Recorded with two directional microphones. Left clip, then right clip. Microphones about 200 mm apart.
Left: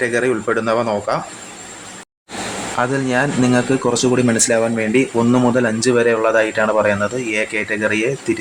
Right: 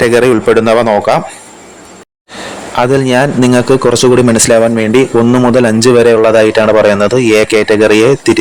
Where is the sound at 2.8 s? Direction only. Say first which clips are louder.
Right 9 dB; 40° right (ahead or behind).